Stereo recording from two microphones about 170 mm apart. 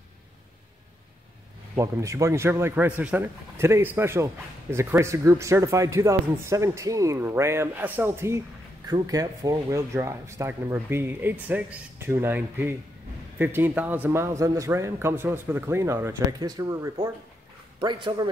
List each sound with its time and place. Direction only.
1.8 s a man's voice: 20° right (ahead or behind)